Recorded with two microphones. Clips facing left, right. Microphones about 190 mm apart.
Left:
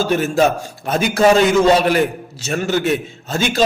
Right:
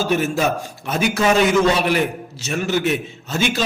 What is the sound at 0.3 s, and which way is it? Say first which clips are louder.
A man's voice: left 5 dB; 45° left (ahead or behind).